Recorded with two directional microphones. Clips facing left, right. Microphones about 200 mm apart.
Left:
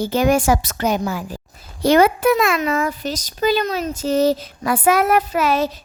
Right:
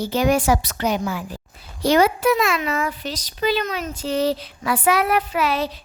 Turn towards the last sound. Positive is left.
turn(degrees=45)  # may be behind; listen again after turning